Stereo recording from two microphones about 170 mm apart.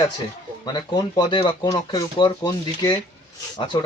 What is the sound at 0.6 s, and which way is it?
Speech, 25° left (ahead or behind).